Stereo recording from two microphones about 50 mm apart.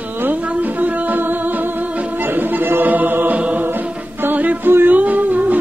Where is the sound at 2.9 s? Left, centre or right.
Right.